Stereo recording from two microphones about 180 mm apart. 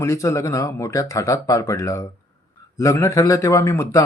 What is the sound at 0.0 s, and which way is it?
Speech, 15° left (ahead or behind).